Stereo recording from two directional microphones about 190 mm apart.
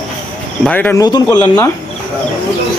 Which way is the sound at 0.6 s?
10° left (ahead or behind).